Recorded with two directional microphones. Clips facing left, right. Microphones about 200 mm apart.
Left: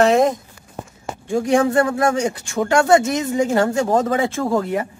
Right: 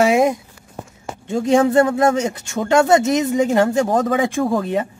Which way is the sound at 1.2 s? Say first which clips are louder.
Right 1 dB; 25° right (ahead or behind).